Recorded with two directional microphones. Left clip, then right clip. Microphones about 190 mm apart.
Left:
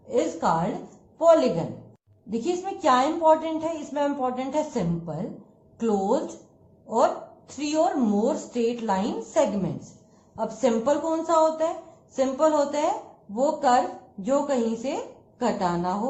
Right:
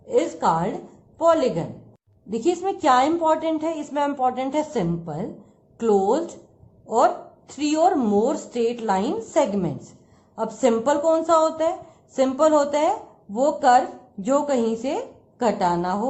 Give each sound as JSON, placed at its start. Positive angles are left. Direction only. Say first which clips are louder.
{"t": 0.1, "sound": "a woman's voice", "louder": "right 3 dB", "side_deg": -45}